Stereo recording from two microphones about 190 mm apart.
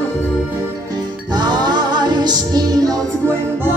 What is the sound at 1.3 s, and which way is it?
Music, 20° right (ahead or behind).